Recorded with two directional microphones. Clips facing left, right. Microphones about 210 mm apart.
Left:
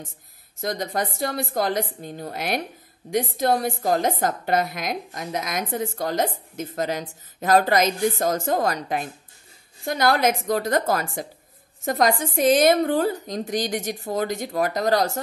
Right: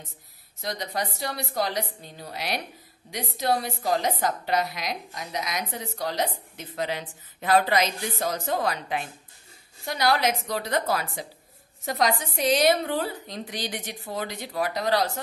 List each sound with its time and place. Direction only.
0.6 s a woman's voice: 50° left (ahead or behind)